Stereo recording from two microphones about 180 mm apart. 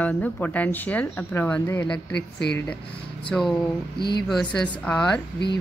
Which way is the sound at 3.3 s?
Centre (ahead or behind).